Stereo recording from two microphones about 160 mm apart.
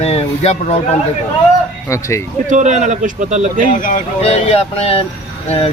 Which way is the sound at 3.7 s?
55° left (ahead or behind).